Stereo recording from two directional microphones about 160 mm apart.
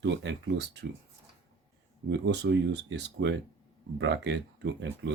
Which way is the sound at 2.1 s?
90° right.